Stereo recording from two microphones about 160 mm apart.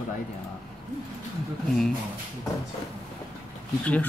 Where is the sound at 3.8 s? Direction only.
10° left (ahead or behind).